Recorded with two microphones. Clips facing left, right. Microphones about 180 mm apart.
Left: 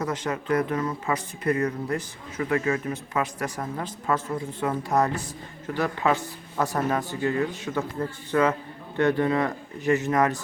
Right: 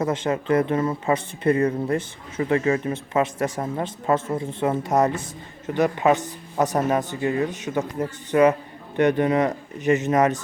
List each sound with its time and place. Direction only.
0.0 s speech: 25° right (ahead or behind)